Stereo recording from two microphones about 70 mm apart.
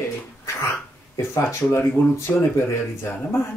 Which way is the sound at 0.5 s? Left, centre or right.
Left.